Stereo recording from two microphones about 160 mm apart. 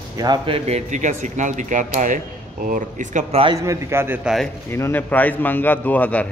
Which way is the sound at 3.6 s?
15° right (ahead or behind).